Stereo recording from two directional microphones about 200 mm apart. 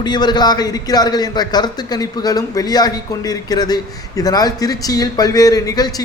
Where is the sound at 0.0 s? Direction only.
20° left (ahead or behind).